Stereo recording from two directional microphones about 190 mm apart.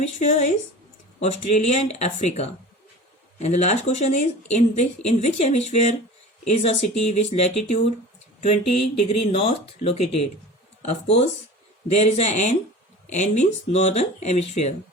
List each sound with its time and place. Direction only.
0.0 s speech: 35° left (ahead or behind)
11.9 s speech: 35° left (ahead or behind)